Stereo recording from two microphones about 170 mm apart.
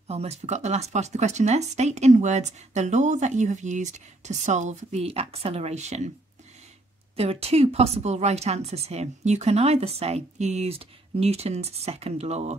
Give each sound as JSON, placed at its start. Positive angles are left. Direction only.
{"t": 0.1, "sound": "speech", "side_deg": -40}
{"t": 7.2, "sound": "speech", "side_deg": -35}